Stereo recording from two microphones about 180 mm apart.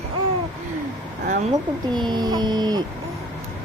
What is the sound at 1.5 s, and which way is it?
Speech, 25° right (ahead or behind).